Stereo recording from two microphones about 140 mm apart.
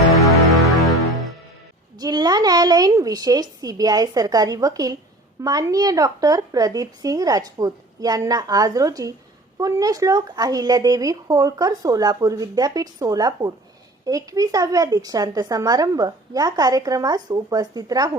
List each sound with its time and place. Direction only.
2.0 s a woman's voice: 30° right (ahead or behind)